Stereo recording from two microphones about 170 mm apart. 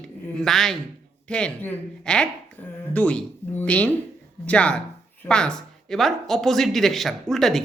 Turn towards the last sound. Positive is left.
turn(degrees=0)  # may be behind; listen again after turning